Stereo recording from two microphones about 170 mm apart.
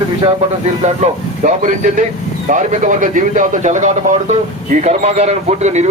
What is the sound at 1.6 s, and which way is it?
Speech, 45° right (ahead or behind).